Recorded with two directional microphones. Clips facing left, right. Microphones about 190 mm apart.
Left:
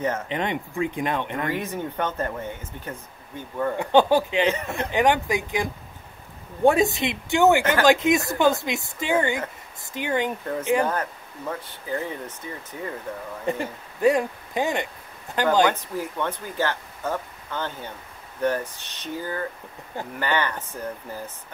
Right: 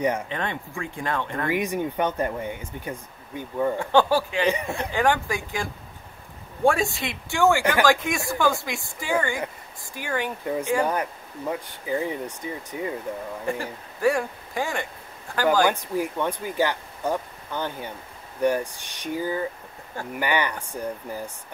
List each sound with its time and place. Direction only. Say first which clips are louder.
0.3 s speech: left 3 dB; 20° left (ahead or behind)
1.5 s speech: right 3 dB; 15° right (ahead or behind)
3.7 s speech: left 3 dB; 15° left (ahead or behind)
4.5 s speech: right 1 dB; 15° right (ahead or behind)
4.7 s speech: left 2 dB; 20° left (ahead or behind)
10.4 s speech: left 1 dB; 15° right (ahead or behind)
13.5 s speech: left 4 dB; 20° left (ahead or behind)
15.7 s speech: right 3 dB; 10° right (ahead or behind)